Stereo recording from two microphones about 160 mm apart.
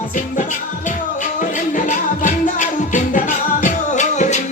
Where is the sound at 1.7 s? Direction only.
55° left (ahead or behind).